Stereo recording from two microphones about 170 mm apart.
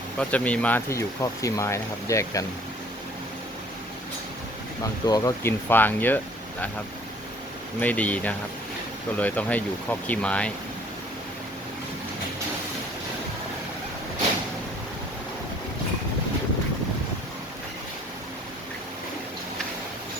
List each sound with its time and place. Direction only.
0.2 s speech: 10° left (ahead or behind)
5.0 s speech: 20° left (ahead or behind)
7.8 s speech: 10° left (ahead or behind)